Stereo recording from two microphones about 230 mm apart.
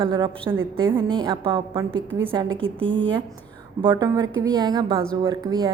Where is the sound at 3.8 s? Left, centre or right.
Centre.